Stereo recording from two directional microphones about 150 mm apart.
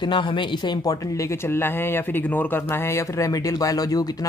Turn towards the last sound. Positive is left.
turn(degrees=25)  # may be behind; listen again after turning